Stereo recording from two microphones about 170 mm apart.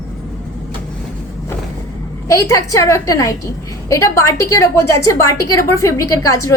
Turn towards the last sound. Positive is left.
turn(degrees=20)  # may be behind; listen again after turning